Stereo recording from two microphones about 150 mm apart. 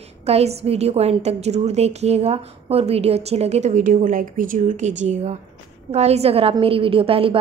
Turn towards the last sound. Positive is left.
turn(degrees=-35)  # may be behind; listen again after turning